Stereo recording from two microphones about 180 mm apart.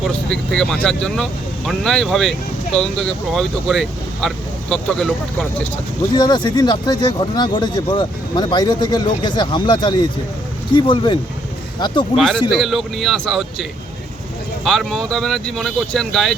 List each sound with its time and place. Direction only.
0.1 s speech: 5° left (ahead or behind)
6.1 s speech: 25° left (ahead or behind)
12.1 s speech: centre (ahead or behind)